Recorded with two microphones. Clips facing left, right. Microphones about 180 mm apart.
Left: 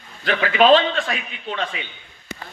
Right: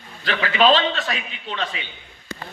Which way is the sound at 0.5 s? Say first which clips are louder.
Left 3 dB; 50° left (ahead or behind).